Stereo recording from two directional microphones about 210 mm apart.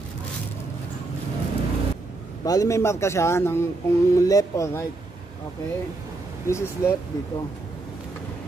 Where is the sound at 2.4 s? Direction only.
15° left (ahead or behind).